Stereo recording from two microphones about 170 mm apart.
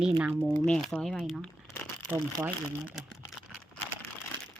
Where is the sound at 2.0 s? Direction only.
10° right (ahead or behind).